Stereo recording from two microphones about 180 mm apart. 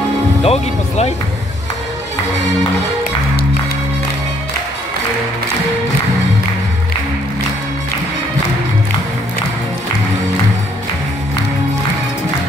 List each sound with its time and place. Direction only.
0.4 s speech: 35° left (ahead or behind)